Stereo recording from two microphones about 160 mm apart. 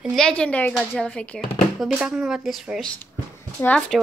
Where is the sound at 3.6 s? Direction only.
10° left (ahead or behind).